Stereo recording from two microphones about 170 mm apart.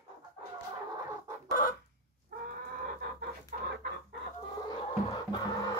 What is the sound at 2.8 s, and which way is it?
Chicken, 60° right (ahead or behind).